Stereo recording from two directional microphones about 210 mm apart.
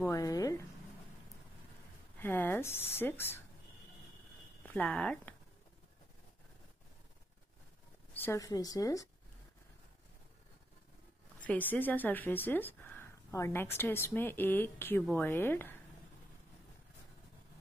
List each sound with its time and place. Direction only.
0.0 s speech: 15° left (ahead or behind)
2.1 s speech: 10° left (ahead or behind)
4.6 s speech: 5° left (ahead or behind)
8.1 s speech: 10° left (ahead or behind)
11.4 s speech: 10° left (ahead or behind)